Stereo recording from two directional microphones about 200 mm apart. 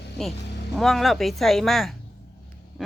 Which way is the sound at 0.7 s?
Centre (ahead or behind).